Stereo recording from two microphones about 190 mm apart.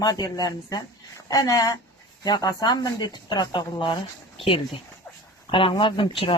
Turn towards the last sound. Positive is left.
turn(degrees=25)  # may be behind; listen again after turning